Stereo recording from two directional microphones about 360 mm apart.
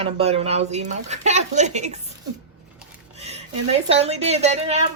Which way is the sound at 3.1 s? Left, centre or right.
Centre.